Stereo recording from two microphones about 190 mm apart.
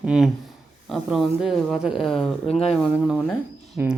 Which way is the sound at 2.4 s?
30° left (ahead or behind).